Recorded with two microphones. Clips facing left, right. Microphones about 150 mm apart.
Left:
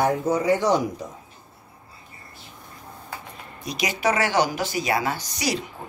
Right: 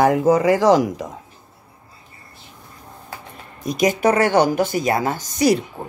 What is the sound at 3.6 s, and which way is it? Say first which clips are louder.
A woman's voice: right 7 dB; 50° right (ahead or behind).